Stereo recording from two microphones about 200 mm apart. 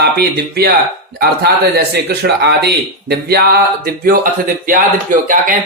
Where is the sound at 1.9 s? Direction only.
55° right (ahead or behind).